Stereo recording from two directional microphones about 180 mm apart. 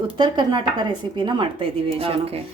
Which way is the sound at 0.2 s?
25° right (ahead or behind).